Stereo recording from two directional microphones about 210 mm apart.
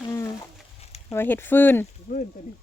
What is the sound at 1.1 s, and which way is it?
Speech, 10° left (ahead or behind).